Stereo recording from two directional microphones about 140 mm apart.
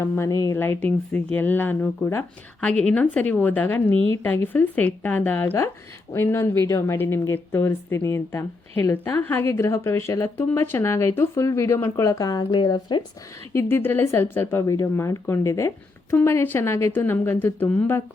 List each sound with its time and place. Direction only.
0.0 s speech: 20° left (ahead or behind)
13.5 s speech: 20° left (ahead or behind)